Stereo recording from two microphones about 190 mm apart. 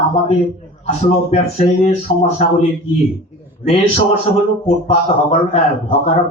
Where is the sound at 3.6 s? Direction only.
35° left (ahead or behind).